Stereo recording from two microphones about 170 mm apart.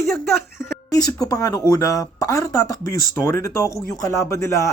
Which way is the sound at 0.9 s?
20° left (ahead or behind).